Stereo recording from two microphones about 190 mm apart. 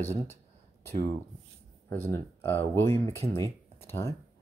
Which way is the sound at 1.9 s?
10° left (ahead or behind).